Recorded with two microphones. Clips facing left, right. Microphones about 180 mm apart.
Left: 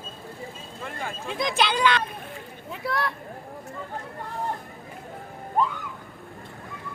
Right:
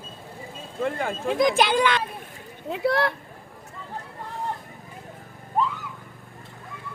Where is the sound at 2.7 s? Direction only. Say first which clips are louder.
Right 6 dB; 75° right (ahead or behind).